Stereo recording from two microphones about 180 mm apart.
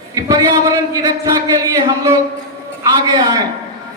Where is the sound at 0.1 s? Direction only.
20° right (ahead or behind).